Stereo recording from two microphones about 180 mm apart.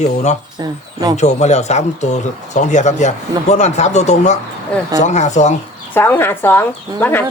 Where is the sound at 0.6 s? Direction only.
25° right (ahead or behind).